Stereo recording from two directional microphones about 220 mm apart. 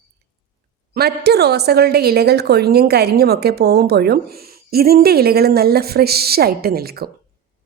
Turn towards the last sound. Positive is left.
turn(degrees=-45)  # may be behind; listen again after turning